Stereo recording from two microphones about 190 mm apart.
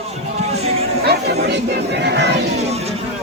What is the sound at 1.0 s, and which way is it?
Chatter, 60° right (ahead or behind).